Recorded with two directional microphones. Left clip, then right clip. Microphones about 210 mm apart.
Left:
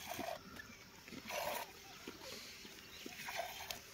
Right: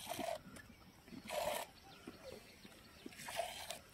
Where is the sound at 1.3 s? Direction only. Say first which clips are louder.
Right 1 dB; 15° right (ahead or behind).